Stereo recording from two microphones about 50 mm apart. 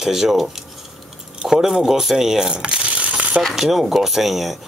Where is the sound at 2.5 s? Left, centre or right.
Right.